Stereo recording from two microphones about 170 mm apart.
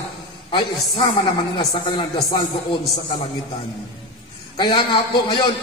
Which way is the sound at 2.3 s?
25° left (ahead or behind).